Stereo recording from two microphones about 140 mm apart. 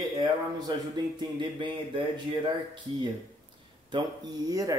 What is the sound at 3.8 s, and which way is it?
Speech, 30° right (ahead or behind).